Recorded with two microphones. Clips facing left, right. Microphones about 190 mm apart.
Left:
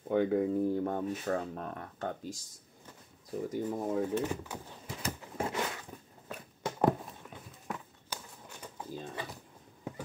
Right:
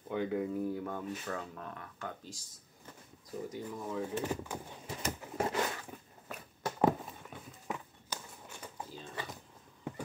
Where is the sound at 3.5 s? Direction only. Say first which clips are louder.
Left 9 dB; 50° left (ahead or behind).